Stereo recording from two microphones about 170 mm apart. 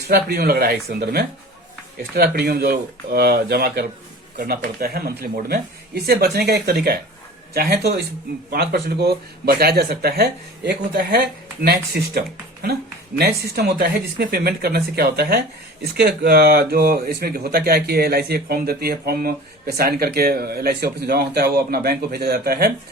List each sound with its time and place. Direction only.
0.1 s speech: 65° right (ahead or behind)